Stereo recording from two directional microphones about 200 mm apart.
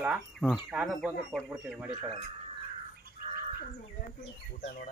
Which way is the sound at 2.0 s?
30° right (ahead or behind).